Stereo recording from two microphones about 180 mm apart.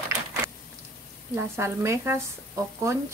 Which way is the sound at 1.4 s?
15° right (ahead or behind).